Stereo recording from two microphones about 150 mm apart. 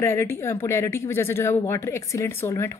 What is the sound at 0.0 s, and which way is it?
A woman's voice, 15° left (ahead or behind).